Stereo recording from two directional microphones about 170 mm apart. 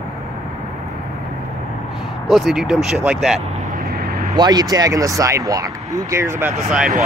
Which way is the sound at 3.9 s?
65° right (ahead or behind).